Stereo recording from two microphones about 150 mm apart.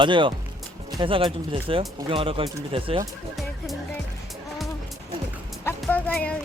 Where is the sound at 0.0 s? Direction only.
35° right (ahead or behind).